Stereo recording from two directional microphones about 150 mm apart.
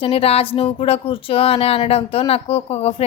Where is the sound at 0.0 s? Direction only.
40° left (ahead or behind).